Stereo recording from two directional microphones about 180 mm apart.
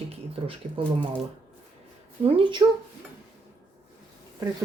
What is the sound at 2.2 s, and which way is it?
Speech, 30° right (ahead or behind).